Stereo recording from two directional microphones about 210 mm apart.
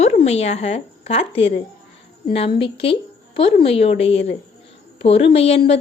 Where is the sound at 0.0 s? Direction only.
30° left (ahead or behind).